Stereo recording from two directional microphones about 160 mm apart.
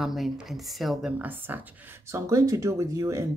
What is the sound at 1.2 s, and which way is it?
Speech, 10° right (ahead or behind).